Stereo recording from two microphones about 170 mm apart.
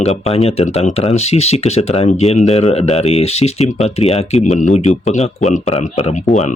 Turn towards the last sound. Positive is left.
turn(degrees=40)  # may be behind; listen again after turning